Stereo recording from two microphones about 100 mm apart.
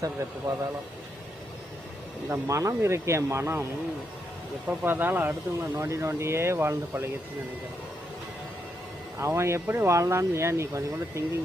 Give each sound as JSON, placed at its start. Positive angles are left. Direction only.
{"t": 0.0, "sound": "a man's voice", "side_deg": -35}
{"t": 2.3, "sound": "speech", "side_deg": -30}
{"t": 4.7, "sound": "speech", "side_deg": -20}
{"t": 9.1, "sound": "speech", "side_deg": -25}